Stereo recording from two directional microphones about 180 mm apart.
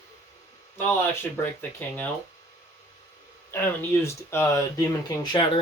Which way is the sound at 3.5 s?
10° left (ahead or behind).